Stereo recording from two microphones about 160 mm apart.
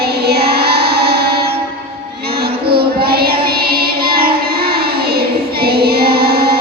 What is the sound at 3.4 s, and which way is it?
Child singing, 70° right (ahead or behind).